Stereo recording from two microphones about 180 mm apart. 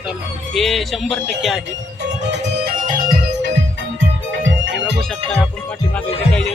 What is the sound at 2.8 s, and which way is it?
Music, 50° right (ahead or behind).